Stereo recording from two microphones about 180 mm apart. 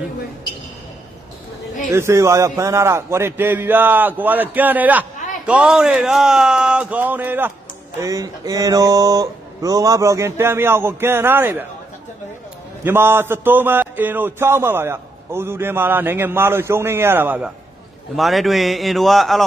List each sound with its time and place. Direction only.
1.9 s a man's voice: 15° right (ahead or behind)
8.0 s a man's voice: 20° right (ahead or behind)
12.8 s a man's voice: 10° right (ahead or behind)
18.1 s speech: centre (ahead or behind)